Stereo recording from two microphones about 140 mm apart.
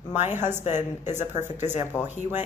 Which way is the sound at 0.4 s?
60° left (ahead or behind).